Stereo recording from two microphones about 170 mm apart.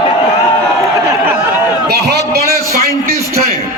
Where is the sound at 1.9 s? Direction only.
75° right (ahead or behind).